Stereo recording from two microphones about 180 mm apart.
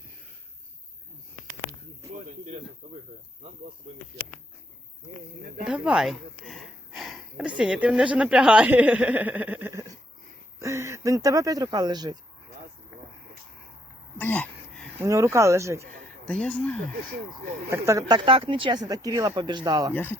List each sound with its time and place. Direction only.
2.8 s speech: 30° right (ahead or behind)
5.6 s speech: 5° right (ahead or behind); by 12.1 s 20° right (ahead or behind)
14.2 s a sound: 10° left (ahead or behind)
14.9 s speech: 15° right (ahead or behind)
16.2 s speech: 5° left (ahead or behind)
17.7 s speech: 15° right (ahead or behind)
18.1 s speech: 30° right (ahead or behind)
19.9 s speech: 10° left (ahead or behind)